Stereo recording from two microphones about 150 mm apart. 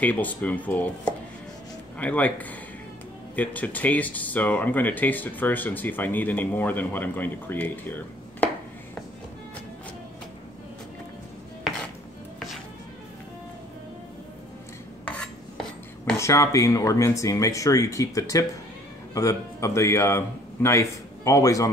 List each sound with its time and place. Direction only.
0.0 s speech: 10° left (ahead or behind)
2.0 s speech: 10° left (ahead or behind)
15.0 s stir: 10° left (ahead or behind)
16.2 s speech: 20° left (ahead or behind)